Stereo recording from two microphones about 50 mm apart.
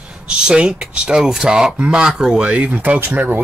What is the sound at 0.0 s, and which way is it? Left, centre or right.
Speech, centre.